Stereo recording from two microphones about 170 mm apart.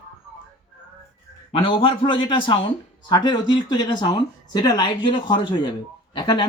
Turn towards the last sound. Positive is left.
turn(degrees=25)  # may be behind; listen again after turning